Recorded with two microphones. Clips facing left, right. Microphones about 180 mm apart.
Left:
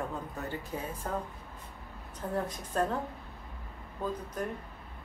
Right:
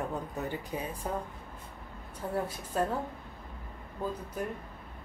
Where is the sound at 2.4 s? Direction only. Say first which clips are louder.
Even; 5° right (ahead or behind).